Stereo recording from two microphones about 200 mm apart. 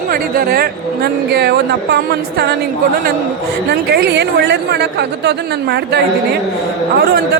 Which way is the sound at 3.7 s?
55° right (ahead or behind).